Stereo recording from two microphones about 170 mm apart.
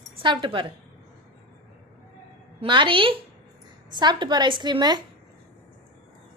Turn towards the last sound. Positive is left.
turn(degrees=-25)  # may be behind; listen again after turning